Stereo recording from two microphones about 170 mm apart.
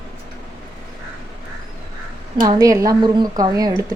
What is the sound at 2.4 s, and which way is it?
A woman's voice, 20° right (ahead or behind).